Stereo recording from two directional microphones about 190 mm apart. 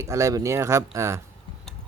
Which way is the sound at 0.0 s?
15° right (ahead or behind).